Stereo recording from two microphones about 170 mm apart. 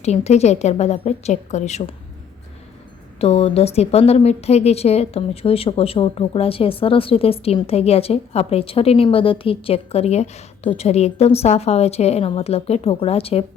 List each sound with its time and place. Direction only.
0.0 s a woman's voice: 40° left (ahead or behind)
3.2 s a woman's voice: 40° left (ahead or behind)